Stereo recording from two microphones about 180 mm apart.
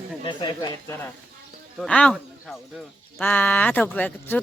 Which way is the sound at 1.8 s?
5° left (ahead or behind).